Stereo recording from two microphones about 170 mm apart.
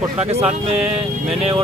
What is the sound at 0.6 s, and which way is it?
Speech, 40° right (ahead or behind).